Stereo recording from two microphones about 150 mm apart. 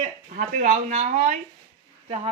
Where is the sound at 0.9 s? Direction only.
50° right (ahead or behind).